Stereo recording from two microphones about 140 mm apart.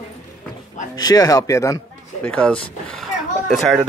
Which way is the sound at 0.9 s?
25° left (ahead or behind).